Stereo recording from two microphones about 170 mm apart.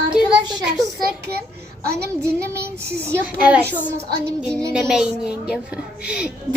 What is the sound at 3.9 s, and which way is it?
Child singing, 75° right (ahead or behind).